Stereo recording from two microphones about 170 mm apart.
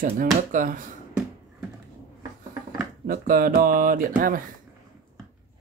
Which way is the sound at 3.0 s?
60° right (ahead or behind).